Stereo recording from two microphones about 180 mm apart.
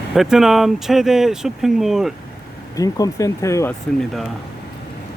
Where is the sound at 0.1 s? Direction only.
Centre (ahead or behind).